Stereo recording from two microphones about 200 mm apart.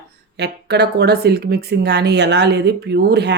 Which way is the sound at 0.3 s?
55° right (ahead or behind).